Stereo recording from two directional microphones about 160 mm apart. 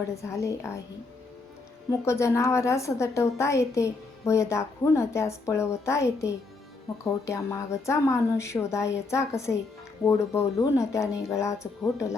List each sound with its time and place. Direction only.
0.1 s a woman's voice: 20° left (ahead or behind)
1.9 s a woman's voice: 20° left (ahead or behind)